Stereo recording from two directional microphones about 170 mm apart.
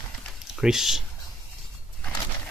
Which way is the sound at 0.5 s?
Centre (ahead or behind).